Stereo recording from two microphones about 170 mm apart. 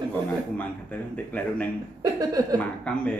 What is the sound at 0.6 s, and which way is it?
A man's voice, 10° left (ahead or behind).